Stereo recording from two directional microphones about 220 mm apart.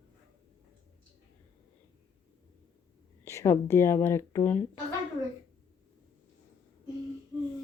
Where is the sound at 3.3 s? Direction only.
15° left (ahead or behind).